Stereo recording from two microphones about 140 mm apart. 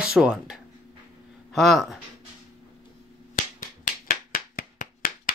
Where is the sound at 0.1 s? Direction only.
5° right (ahead or behind).